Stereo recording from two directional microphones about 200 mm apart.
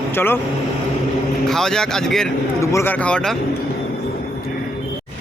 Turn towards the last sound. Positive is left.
turn(degrees=5)  # may be behind; listen again after turning